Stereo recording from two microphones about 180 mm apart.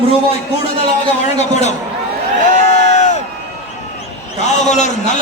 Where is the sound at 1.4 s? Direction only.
40° left (ahead or behind).